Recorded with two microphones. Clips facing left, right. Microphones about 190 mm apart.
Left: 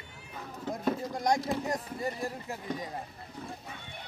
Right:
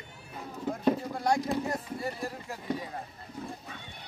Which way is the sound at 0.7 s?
15° left (ahead or behind).